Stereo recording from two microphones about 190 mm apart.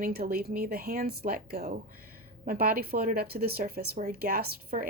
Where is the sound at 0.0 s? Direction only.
50° right (ahead or behind).